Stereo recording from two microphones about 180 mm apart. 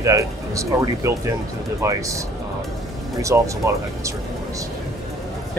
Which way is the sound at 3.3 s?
15° right (ahead or behind).